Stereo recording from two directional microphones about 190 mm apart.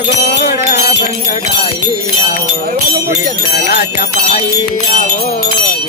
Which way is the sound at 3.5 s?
60° left (ahead or behind).